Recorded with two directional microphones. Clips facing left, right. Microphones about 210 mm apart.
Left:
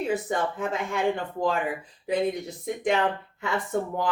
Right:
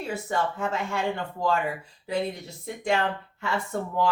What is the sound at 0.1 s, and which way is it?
Speech, 15° left (ahead or behind).